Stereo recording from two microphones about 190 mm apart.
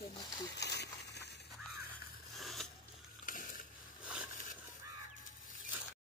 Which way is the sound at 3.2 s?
45° left (ahead or behind).